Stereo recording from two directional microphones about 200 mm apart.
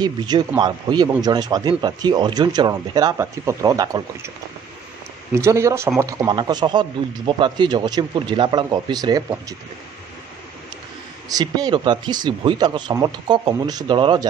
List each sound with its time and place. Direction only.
0.0 s a man's voice: 20° right (ahead or behind)
5.3 s a man's voice: 15° right (ahead or behind)
11.2 s a man's voice: 20° right (ahead or behind)